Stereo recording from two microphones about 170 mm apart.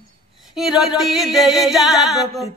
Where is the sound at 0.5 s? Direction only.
Centre (ahead or behind).